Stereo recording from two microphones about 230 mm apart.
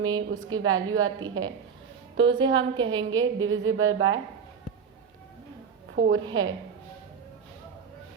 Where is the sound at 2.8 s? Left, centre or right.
Right.